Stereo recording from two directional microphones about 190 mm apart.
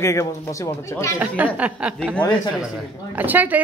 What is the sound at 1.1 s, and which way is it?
Speech, 10° right (ahead or behind).